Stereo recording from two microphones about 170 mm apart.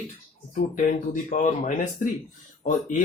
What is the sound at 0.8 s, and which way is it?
Speech, 45° left (ahead or behind).